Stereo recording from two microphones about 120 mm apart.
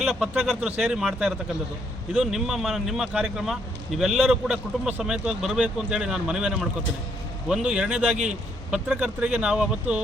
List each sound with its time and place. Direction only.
0.0 s speech: 5° right (ahead or behind)
8.1 s a man's voice: 80° right
8.7 s speech: 10° right (ahead or behind)